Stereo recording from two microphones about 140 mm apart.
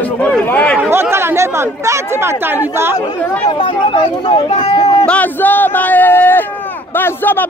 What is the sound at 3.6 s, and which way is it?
Speech, 40° left (ahead or behind).